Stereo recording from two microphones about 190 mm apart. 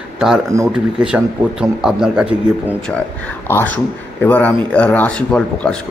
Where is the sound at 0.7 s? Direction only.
5° right (ahead or behind).